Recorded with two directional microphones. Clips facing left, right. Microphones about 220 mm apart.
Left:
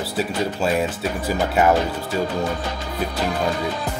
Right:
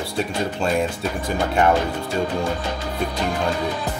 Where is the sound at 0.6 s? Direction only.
5° left (ahead or behind).